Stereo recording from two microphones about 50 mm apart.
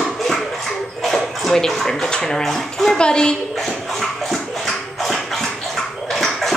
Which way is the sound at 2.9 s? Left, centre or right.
Centre.